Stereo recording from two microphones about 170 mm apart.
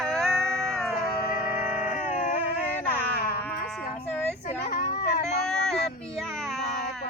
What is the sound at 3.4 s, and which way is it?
Baby cry, 10° left (ahead or behind).